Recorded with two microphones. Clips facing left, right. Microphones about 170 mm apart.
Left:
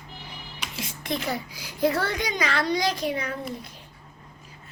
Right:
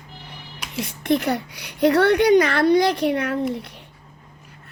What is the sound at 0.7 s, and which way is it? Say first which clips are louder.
A woman's voice: right 10 dB; 65° right (ahead or behind).